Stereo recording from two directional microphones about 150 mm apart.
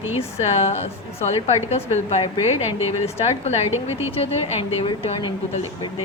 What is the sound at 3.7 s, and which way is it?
Speech, 15° right (ahead or behind).